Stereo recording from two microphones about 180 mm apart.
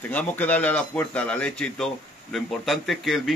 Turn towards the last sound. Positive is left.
turn(degrees=0)  # may be behind; listen again after turning